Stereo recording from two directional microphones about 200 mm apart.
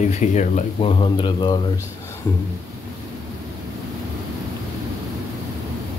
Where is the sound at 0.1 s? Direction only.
35° left (ahead or behind).